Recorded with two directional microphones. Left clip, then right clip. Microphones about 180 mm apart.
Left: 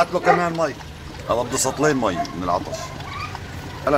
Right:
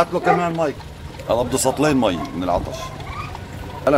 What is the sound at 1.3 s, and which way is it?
Speech, 45° right (ahead or behind).